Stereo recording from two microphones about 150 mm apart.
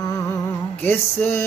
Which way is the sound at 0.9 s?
15° left (ahead or behind).